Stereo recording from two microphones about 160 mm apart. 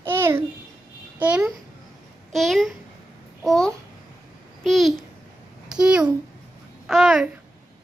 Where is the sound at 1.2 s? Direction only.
5° right (ahead or behind).